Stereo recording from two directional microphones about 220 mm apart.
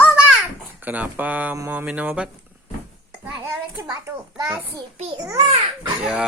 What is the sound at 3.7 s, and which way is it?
Speech, 10° right (ahead or behind).